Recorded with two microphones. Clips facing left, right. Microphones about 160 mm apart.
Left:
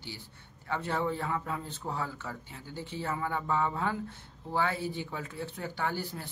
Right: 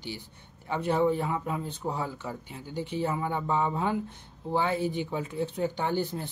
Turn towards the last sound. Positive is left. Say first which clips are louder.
# right 5 dB
turn(degrees=-20)  # may be behind; listen again after turning